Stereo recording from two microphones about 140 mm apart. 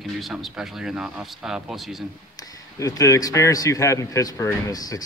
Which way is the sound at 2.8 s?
25° left (ahead or behind).